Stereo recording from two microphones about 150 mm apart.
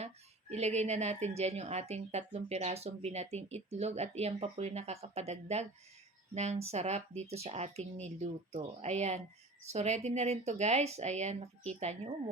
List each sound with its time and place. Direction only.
0.5 s a woman's voice: 45° right (ahead or behind)